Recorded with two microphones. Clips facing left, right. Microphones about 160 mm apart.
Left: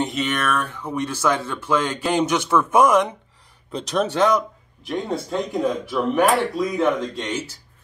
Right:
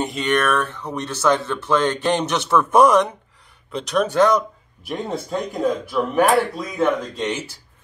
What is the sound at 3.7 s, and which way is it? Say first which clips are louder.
Speech: right 2 dB; 30° left (ahead or behind).